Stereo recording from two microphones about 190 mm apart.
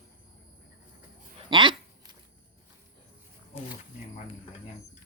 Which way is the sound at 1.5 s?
25° right (ahead or behind).